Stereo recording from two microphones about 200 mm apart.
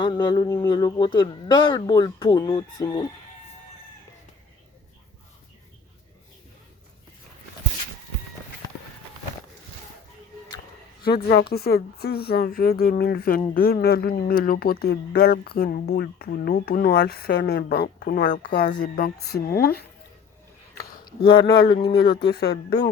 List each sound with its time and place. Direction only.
0.0 s speech: 20° left (ahead or behind)
11.0 s speech: 50° left (ahead or behind)
21.0 s speech: 25° left (ahead or behind)
22.3 s speech: 55° left (ahead or behind)